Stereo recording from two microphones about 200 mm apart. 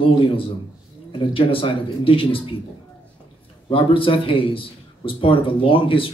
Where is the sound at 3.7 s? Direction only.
25° left (ahead or behind).